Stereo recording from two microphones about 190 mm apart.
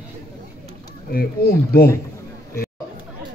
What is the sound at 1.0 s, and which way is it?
Speech, 50° left (ahead or behind).